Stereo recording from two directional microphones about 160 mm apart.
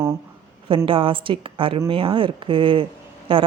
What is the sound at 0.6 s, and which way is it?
A woman's voice, 35° right (ahead or behind).